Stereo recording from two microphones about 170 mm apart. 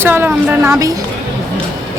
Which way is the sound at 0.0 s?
10° right (ahead or behind).